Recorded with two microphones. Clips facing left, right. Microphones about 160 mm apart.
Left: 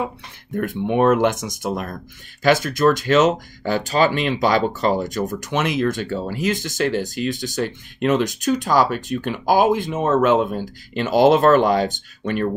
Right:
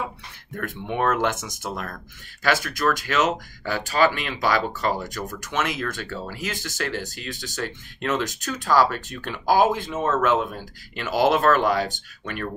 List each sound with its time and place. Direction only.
0.6 s speech: 20° left (ahead or behind)